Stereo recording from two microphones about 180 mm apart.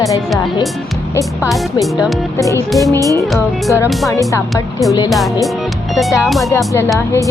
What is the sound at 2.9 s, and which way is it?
Music, 20° right (ahead or behind).